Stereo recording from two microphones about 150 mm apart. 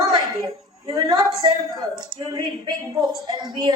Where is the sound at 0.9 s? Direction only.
25° right (ahead or behind).